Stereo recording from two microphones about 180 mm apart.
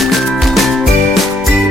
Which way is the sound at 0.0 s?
Centre (ahead or behind).